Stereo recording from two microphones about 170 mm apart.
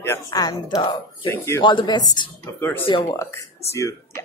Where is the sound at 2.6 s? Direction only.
15° left (ahead or behind).